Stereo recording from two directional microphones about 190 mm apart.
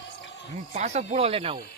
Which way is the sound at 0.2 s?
70° left (ahead or behind).